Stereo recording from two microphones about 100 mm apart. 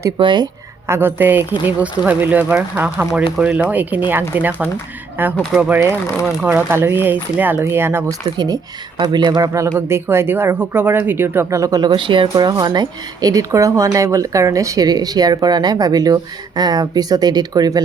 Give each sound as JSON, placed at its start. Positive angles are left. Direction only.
{"t": 0.2, "sound": "speech", "side_deg": -55}
{"t": 0.9, "sound": "speech", "side_deg": -25}
{"t": 8.4, "sound": "speech", "side_deg": -40}
{"t": 9.5, "sound": "speech", "side_deg": -30}
{"t": 11.8, "sound": "speech", "side_deg": -55}